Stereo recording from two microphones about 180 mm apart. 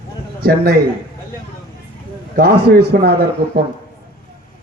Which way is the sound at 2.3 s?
60° right (ahead or behind).